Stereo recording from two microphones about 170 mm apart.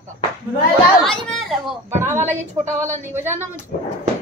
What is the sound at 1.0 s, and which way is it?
Speech, centre (ahead or behind).